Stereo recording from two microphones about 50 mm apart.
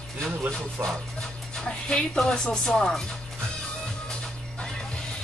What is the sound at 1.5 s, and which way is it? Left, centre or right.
Speech, centre.